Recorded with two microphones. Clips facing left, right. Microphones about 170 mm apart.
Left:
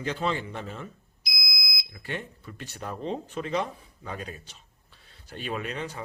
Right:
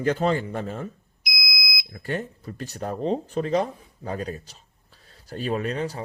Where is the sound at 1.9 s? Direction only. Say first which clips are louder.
Right 6 dB; 40° right (ahead or behind).